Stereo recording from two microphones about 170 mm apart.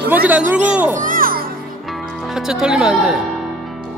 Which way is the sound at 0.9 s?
55° right (ahead or behind).